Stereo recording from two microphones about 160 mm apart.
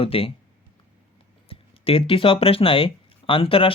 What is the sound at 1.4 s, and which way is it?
Speech, 35° left (ahead or behind).